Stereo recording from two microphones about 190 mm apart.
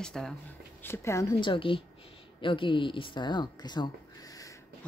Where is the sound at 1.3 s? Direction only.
25° left (ahead or behind).